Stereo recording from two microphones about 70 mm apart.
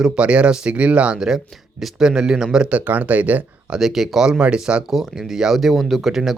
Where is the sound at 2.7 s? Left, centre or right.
Right.